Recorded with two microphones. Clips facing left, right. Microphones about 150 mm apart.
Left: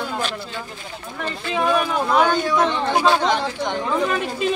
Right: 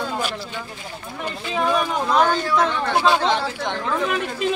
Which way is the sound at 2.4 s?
20° left (ahead or behind).